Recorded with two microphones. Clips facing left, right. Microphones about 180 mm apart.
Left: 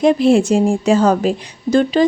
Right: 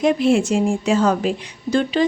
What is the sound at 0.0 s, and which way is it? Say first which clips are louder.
Speech: left 4 dB; 35° left (ahead or behind).